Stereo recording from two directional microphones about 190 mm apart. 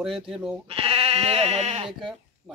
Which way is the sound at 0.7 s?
30° right (ahead or behind).